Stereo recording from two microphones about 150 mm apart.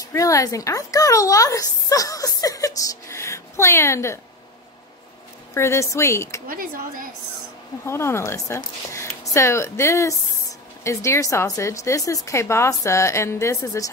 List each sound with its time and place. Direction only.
0.0 s speech: 20° left (ahead or behind)
5.5 s a woman's voice: 20° left (ahead or behind)
6.4 s speech: 70° right (ahead or behind)
7.8 s a woman's voice: 15° left (ahead or behind)